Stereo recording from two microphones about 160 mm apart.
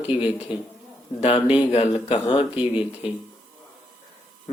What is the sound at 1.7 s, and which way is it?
Speech, 35° left (ahead or behind).